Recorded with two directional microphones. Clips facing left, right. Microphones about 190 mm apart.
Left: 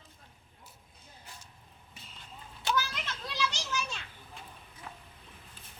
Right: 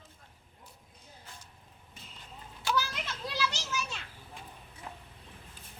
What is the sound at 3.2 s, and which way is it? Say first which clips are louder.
Children playing: right 1 dB; 5° right (ahead or behind).